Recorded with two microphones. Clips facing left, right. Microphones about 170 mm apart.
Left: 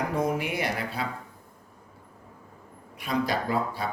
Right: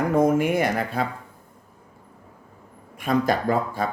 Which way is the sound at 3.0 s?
50° right (ahead or behind).